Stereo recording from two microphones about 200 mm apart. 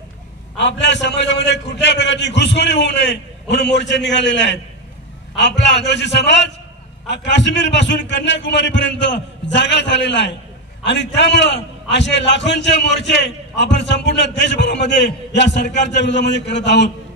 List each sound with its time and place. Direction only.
0.6 s a man's voice: 60° left (ahead or behind)